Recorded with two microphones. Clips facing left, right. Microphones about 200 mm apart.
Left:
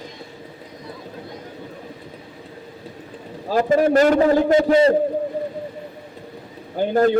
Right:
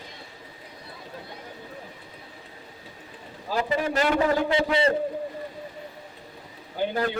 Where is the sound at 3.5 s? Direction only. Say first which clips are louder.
Left 9 dB; 45° left (ahead or behind).